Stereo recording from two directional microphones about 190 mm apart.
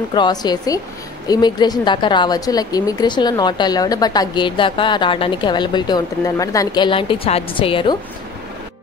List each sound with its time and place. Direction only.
0.1 s a woman's voice: 20° left (ahead or behind)